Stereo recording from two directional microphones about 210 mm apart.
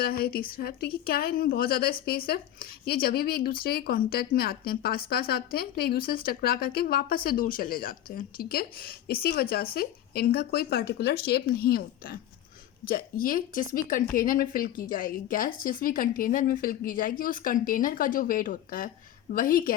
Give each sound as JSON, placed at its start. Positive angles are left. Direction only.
{"t": 0.0, "sound": "a woman's voice", "side_deg": 45}